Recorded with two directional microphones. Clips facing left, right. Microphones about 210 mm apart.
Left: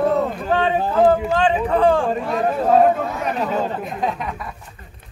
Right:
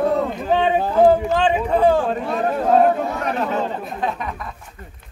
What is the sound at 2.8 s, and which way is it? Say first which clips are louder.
Chatter: left 1 dB; 5° left (ahead or behind).